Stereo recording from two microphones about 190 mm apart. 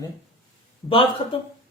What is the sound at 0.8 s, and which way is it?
Speech, 15° left (ahead or behind).